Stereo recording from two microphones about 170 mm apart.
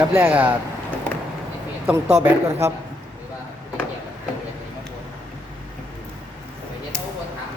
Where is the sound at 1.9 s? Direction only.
10° right (ahead or behind).